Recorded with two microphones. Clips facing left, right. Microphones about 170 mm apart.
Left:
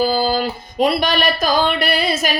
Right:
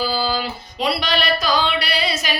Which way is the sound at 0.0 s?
45° left (ahead or behind).